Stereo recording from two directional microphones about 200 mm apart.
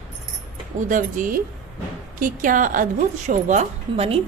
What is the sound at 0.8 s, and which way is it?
A woman's voice, 40° right (ahead or behind).